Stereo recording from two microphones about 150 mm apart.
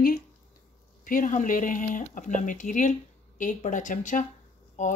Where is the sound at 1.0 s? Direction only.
65° left (ahead or behind).